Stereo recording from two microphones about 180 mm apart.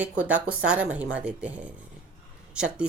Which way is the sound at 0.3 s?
5° right (ahead or behind).